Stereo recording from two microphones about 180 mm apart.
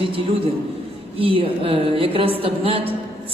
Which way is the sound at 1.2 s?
30° right (ahead or behind).